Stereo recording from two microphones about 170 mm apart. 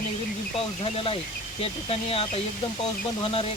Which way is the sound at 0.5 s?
35° left (ahead or behind).